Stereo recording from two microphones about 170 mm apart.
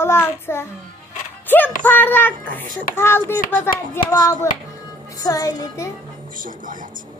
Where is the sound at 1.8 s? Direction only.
10° left (ahead or behind).